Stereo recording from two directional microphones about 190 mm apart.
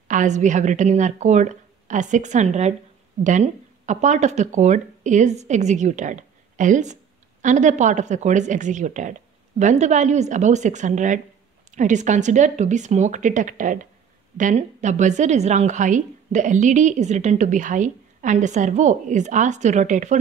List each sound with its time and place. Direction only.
0.1 s a woman's voice: 40° right (ahead or behind)